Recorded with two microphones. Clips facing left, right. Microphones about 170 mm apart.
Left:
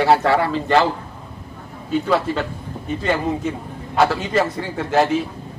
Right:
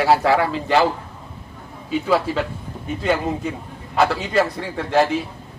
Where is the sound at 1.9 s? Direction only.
5° right (ahead or behind).